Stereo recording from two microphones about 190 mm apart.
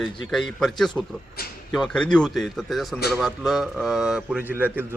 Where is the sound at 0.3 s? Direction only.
Centre (ahead or behind).